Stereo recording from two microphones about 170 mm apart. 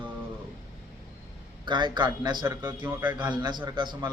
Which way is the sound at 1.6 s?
25° right (ahead or behind).